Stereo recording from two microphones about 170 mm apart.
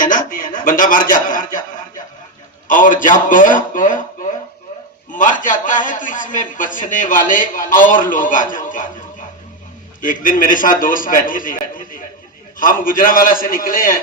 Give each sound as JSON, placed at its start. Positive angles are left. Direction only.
{"t": 0.0, "sound": "a man's voice", "side_deg": 50}
{"t": 10.0, "sound": "a man's voice", "side_deg": 55}